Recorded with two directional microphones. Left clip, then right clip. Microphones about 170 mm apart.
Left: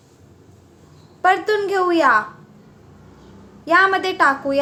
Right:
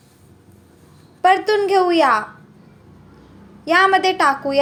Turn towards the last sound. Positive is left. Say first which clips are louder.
# even
turn(degrees=-15)  # may be behind; listen again after turning